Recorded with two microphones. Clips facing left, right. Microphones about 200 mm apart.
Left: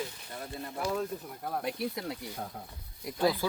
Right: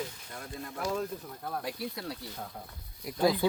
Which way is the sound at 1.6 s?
20° left (ahead or behind).